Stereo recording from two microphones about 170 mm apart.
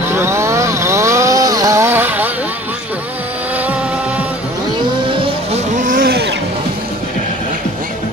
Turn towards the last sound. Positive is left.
turn(degrees=-65)  # may be behind; listen again after turning